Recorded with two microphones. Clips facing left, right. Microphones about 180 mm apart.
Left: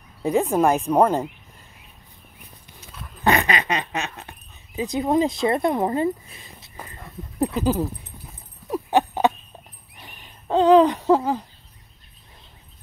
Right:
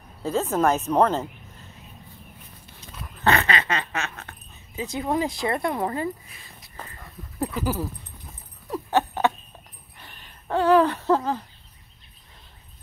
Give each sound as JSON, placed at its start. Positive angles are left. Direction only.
{"t": 0.2, "sound": "speech", "side_deg": 15}
{"t": 3.2, "sound": "speech", "side_deg": 15}
{"t": 8.6, "sound": "a sound", "side_deg": 15}